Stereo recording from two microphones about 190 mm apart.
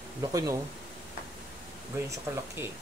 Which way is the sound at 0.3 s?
15° right (ahead or behind).